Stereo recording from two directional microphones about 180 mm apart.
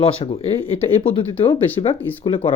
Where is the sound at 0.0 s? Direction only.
30° left (ahead or behind).